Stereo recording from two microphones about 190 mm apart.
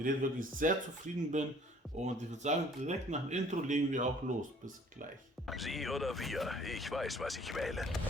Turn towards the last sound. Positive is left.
turn(degrees=0)  # may be behind; listen again after turning